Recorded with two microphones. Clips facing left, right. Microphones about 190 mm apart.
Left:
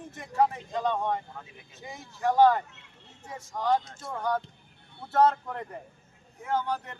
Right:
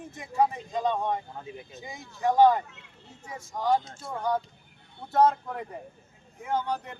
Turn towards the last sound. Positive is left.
turn(degrees=-15)  # may be behind; listen again after turning